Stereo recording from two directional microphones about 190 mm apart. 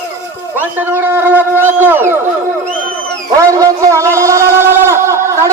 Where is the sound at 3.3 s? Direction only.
15° right (ahead or behind).